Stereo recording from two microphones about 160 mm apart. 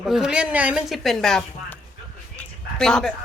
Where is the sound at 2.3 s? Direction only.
5° left (ahead or behind).